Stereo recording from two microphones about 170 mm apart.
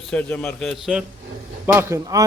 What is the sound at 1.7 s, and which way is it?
Speech, 15° right (ahead or behind).